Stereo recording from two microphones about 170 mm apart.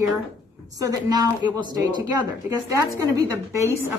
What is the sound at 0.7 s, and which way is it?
Speech, 20° right (ahead or behind).